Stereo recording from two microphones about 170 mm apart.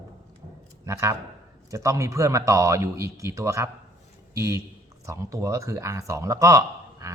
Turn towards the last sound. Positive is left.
turn(degrees=-20)  # may be behind; listen again after turning